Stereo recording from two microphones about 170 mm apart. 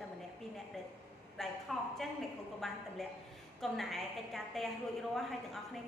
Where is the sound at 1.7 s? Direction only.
Centre (ahead or behind).